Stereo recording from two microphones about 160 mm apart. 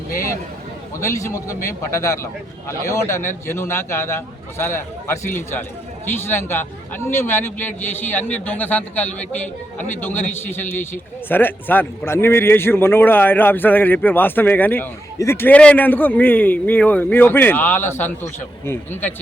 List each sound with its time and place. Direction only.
0.9 s a man's voice: 20° left (ahead or behind)